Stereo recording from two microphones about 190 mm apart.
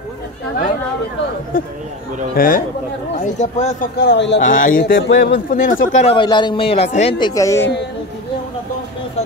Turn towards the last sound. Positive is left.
turn(degrees=15)  # may be behind; listen again after turning